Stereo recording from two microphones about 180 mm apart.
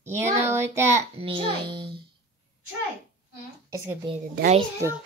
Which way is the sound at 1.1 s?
30° right (ahead or behind).